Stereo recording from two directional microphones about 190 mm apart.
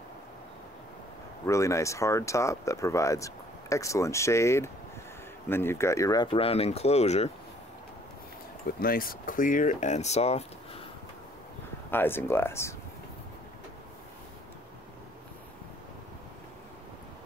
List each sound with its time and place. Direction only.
1.4 s speech: 15° left (ahead or behind); by 7.2 s 35° left (ahead or behind)
8.6 s speech: 50° left (ahead or behind); by 10.4 s 35° left (ahead or behind)
11.9 s speech: 10° left (ahead or behind)